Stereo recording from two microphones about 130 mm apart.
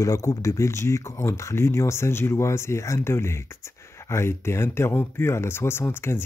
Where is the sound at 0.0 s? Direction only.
25° left (ahead or behind).